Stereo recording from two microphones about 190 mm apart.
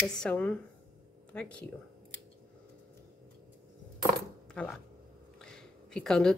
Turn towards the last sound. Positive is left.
turn(degrees=5)  # may be behind; listen again after turning